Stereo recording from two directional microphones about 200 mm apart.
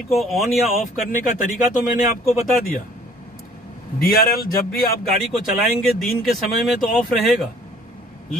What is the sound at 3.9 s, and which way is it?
Speech, 45° left (ahead or behind).